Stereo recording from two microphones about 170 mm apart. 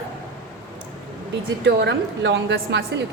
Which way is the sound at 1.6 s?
90° right.